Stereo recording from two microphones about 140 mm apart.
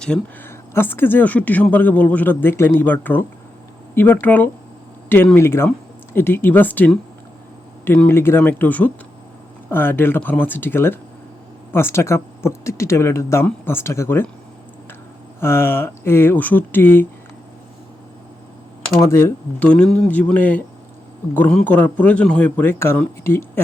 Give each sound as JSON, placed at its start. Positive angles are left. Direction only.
{"t": 0.0, "sound": "speech", "side_deg": 5}
{"t": 15.4, "sound": "speech", "side_deg": 15}
{"t": 18.9, "sound": "speech", "side_deg": 20}